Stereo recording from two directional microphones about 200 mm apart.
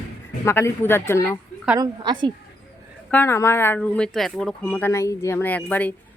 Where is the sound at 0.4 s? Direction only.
10° left (ahead or behind).